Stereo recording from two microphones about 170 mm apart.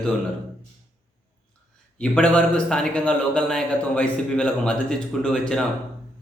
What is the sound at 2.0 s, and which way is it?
A man's voice, 5° left (ahead or behind).